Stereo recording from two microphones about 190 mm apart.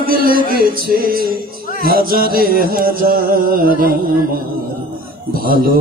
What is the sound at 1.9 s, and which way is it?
Mantra, 50° right (ahead or behind).